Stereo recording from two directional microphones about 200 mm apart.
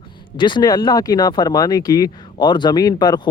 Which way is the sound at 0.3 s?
25° left (ahead or behind).